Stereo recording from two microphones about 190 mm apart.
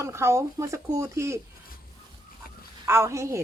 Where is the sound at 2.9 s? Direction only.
15° right (ahead or behind).